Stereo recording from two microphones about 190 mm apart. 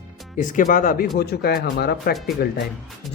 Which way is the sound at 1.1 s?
60° left (ahead or behind).